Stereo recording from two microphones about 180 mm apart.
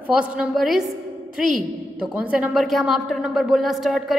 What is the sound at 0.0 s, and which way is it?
A woman's voice, 5° right (ahead or behind).